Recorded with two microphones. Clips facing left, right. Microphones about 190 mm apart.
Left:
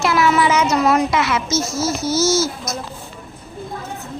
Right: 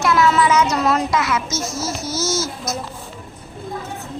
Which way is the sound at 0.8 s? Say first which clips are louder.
Left 2 dB; 15° left (ahead or behind).